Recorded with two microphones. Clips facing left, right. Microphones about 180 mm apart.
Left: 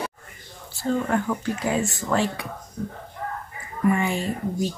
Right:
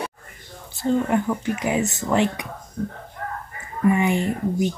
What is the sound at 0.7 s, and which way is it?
Speech, 20° right (ahead or behind).